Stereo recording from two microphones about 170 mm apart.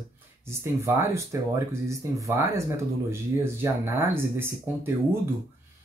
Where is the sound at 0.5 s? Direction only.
15° right (ahead or behind).